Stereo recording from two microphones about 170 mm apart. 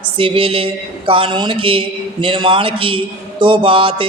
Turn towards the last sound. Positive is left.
turn(degrees=-30)  # may be behind; listen again after turning